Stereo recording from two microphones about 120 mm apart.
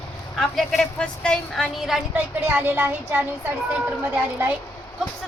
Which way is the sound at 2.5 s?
15° right (ahead or behind).